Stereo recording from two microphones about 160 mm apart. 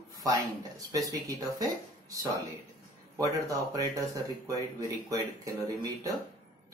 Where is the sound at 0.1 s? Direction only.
20° right (ahead or behind).